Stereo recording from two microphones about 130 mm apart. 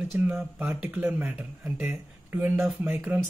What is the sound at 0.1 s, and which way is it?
Speech, 15° right (ahead or behind).